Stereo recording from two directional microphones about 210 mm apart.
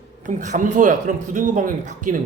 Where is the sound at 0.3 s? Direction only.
35° right (ahead or behind).